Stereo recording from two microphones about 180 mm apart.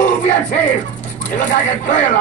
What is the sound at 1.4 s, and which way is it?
Speech, 45° left (ahead or behind).